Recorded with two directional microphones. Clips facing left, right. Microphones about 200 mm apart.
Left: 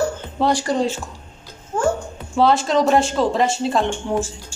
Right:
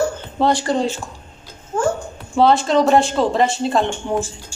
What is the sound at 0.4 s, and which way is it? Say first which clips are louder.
Speech: right 2 dB; 10° left (ahead or behind).